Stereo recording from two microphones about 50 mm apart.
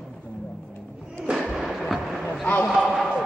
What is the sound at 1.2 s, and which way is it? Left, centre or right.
Fireworks, centre.